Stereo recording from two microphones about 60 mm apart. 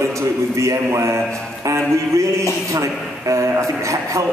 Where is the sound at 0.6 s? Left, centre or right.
Right.